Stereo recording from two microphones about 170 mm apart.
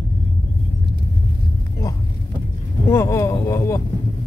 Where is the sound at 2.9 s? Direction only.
15° left (ahead or behind).